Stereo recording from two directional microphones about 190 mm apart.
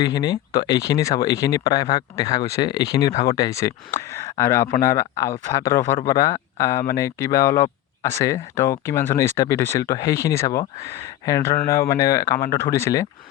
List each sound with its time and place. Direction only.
0.0 s speech: 20° left (ahead or behind)
10.8 s speech: 35° right (ahead or behind)
11.3 s speech: 15° left (ahead or behind)